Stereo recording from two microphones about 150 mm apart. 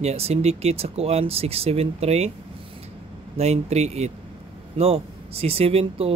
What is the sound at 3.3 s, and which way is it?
Speech, 45° right (ahead or behind).